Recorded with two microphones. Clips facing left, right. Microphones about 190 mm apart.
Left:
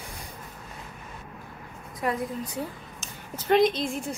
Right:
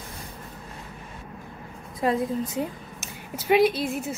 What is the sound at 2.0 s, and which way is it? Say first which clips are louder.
Speech: right 5 dB; 25° right (ahead or behind).